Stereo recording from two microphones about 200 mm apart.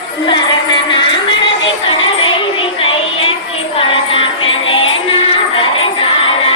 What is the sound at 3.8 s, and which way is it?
Music, 25° left (ahead or behind).